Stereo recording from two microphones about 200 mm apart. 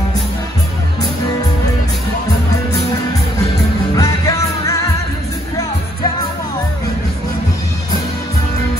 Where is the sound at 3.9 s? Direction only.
15° left (ahead or behind).